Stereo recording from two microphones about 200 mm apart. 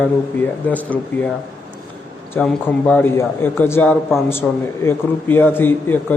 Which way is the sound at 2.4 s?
5° left (ahead or behind).